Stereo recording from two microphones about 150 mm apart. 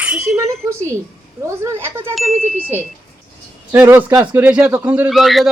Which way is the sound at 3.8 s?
15° right (ahead or behind).